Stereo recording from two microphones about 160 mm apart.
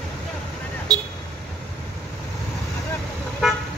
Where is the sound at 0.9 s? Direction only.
25° right (ahead or behind).